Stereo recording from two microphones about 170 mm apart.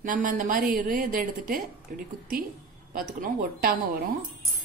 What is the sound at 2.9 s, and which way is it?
Speech, 55° right (ahead or behind).